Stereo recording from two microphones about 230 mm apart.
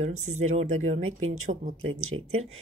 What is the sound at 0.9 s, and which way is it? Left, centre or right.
Speech, right.